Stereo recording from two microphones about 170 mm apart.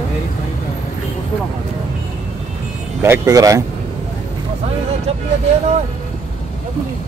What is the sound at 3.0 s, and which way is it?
Speech, 15° right (ahead or behind).